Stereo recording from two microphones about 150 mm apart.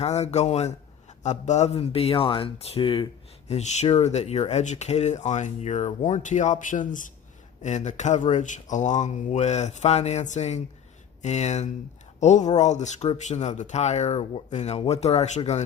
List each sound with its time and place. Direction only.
0.0 s speech: 45° left (ahead or behind)